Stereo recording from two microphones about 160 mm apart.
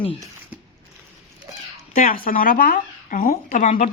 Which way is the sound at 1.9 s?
60° left (ahead or behind).